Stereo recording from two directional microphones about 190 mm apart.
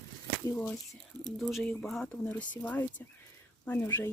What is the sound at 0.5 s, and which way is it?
Speech, 5° left (ahead or behind).